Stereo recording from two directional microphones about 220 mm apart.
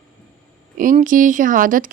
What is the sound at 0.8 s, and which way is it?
Speech, 35° right (ahead or behind).